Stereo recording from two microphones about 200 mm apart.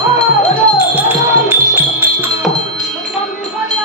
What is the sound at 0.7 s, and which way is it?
Music, 10° right (ahead or behind).